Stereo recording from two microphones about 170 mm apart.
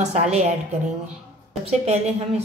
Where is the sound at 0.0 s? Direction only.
40° right (ahead or behind).